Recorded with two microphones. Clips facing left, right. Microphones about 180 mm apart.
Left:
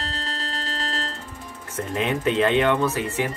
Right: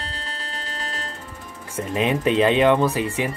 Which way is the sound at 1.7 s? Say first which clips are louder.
Right 3 dB; 20° right (ahead or behind).